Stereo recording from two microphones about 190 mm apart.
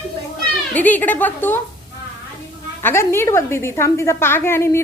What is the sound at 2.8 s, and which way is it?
A woman's voice, 10° left (ahead or behind).